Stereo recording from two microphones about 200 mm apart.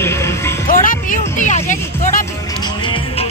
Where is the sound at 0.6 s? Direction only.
40° left (ahead or behind).